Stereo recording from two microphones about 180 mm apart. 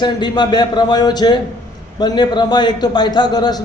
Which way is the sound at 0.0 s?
25° left (ahead or behind).